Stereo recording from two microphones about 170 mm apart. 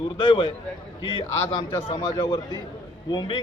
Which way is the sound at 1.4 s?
15° left (ahead or behind).